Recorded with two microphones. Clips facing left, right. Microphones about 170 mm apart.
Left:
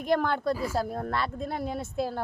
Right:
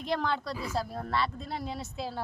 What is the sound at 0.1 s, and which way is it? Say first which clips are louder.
Speech: left 6 dB; 50° left (ahead or behind).